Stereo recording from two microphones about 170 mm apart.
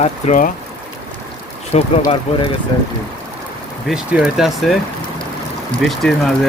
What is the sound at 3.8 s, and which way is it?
Speech, 5° right (ahead or behind).